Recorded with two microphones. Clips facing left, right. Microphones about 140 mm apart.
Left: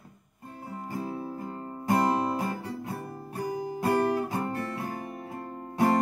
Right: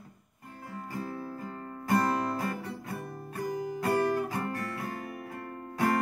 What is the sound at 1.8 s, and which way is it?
Music, 25° left (ahead or behind).